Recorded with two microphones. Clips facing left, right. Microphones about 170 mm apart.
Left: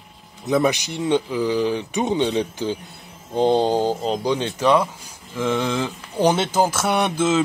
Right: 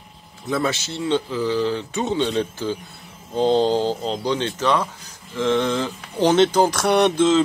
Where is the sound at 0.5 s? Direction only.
15° left (ahead or behind).